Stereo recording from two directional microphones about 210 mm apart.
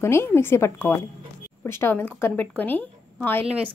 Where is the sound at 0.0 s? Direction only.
10° left (ahead or behind).